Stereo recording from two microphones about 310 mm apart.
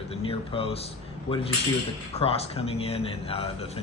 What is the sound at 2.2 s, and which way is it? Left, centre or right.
Speech, centre.